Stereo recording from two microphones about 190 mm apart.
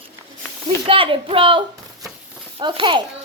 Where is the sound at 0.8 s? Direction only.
25° right (ahead or behind).